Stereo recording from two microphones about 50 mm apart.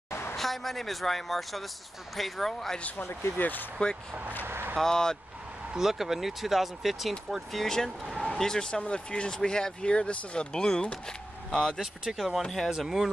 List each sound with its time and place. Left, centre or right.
0.1 s a sound: left
0.4 s speech: centre
3.1 s speech: left
3.3 s speech: left
4.5 s vehicle: right
4.7 s speech: centre
5.8 s speech: centre
7.6 s speech: centre
8.0 s a sound: centre
8.3 s speech: centre
11.8 s speech: centre